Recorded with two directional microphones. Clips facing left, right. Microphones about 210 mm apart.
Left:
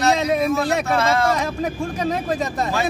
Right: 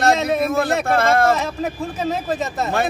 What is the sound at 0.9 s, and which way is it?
Speech, 55° right (ahead or behind).